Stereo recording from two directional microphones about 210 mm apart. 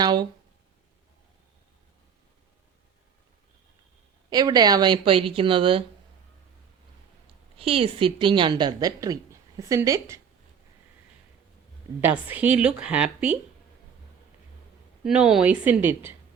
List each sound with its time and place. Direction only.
0.0 s a woman's voice: 20° right (ahead or behind)
4.3 s a woman's voice: 20° right (ahead or behind)
7.6 s a woman's voice: 25° right (ahead or behind)
11.9 s speech: 10° right (ahead or behind)
15.0 s speech: 5° right (ahead or behind)